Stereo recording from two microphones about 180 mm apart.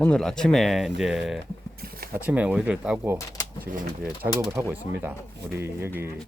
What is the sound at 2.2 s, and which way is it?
Speech, 10° right (ahead or behind).